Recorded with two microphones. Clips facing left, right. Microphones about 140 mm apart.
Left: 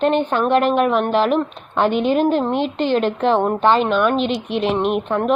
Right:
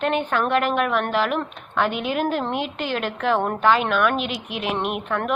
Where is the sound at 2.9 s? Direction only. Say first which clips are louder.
Left 5 dB; 30° left (ahead or behind).